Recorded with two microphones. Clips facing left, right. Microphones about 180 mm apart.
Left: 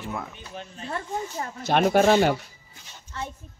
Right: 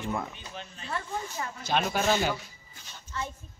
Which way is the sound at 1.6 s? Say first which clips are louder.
Left 9 dB; 60° left (ahead or behind).